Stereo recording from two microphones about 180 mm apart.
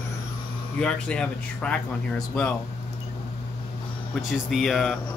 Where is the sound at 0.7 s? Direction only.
5° left (ahead or behind).